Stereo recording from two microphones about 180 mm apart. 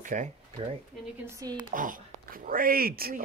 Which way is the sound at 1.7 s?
50° right (ahead or behind).